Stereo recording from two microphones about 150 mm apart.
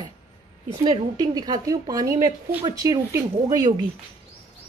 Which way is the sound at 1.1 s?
25° right (ahead or behind).